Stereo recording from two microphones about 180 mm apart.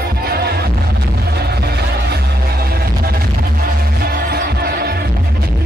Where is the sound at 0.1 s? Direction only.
60° right (ahead or behind).